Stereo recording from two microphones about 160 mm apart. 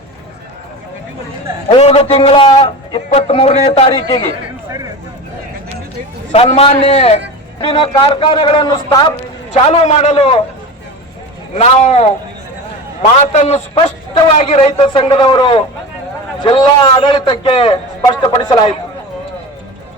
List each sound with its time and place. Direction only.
1.7 s a man's voice: 40° left (ahead or behind)
6.3 s a man's voice: 40° left (ahead or behind)
9.5 s a man's voice: 40° left (ahead or behind)
11.5 s speech: 45° left (ahead or behind)
13.1 s a man's voice: 45° left (ahead or behind)